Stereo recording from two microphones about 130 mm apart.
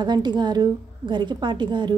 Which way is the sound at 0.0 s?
35° right (ahead or behind).